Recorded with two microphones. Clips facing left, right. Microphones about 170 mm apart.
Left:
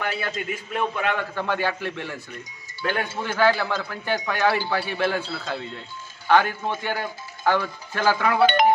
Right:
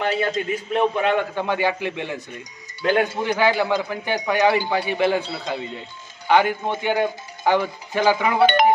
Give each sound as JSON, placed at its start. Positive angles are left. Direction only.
{"t": 0.3, "sound": "a man's voice", "side_deg": -25}